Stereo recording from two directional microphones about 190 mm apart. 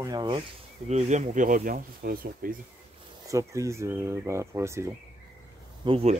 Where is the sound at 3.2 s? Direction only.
15° right (ahead or behind).